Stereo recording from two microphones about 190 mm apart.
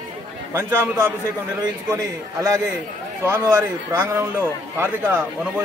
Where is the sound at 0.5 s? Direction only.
15° right (ahead or behind).